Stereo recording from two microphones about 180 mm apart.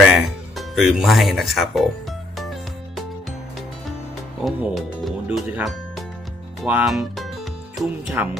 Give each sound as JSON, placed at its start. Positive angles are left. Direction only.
{"t": 0.0, "sound": "speech", "side_deg": 0}
{"t": 2.4, "sound": "music", "side_deg": 0}
{"t": 4.4, "sound": "speech", "side_deg": 0}